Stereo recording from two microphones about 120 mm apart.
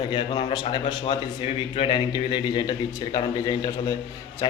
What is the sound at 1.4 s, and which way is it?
Speech, 50° left (ahead or behind).